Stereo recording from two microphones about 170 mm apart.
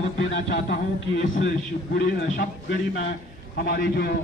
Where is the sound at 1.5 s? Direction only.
55° left (ahead or behind).